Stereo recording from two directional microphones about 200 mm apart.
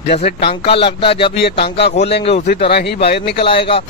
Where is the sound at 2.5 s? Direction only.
55° left (ahead or behind).